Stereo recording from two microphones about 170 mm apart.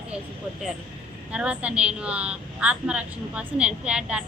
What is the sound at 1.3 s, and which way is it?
A woman's voice, 5° right (ahead or behind).